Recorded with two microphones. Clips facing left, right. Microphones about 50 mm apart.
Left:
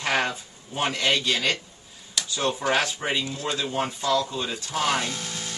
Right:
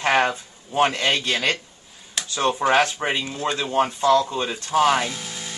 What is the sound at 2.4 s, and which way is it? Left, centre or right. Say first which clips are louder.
Speech: right 6 dB; right.